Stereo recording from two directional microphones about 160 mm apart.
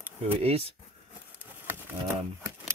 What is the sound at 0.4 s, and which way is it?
Speech, 40° right (ahead or behind).